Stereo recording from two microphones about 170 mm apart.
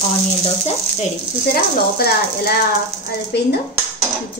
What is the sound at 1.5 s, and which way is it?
Speech, 65° left (ahead or behind).